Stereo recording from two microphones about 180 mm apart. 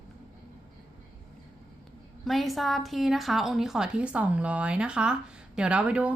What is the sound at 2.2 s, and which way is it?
A woman's voice, centre (ahead or behind).